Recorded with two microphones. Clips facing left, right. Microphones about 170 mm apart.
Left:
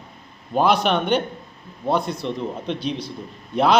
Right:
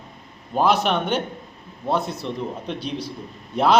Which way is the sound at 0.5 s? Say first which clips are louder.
Left 1 dB; 5° right (ahead or behind).